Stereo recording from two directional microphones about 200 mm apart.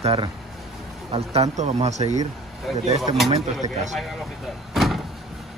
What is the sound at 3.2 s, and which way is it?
Speech, 30° right (ahead or behind).